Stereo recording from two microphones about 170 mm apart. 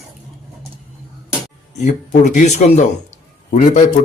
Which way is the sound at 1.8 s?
45° left (ahead or behind).